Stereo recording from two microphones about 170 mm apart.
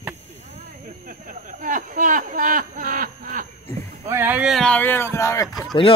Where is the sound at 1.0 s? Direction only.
55° right (ahead or behind).